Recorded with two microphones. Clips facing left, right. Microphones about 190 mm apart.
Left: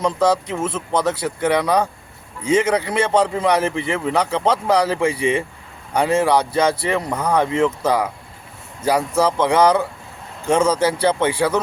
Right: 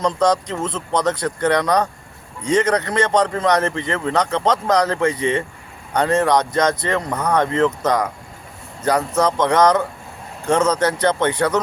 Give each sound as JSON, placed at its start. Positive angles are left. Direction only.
{"t": 0.0, "sound": "a man's voice", "side_deg": 5}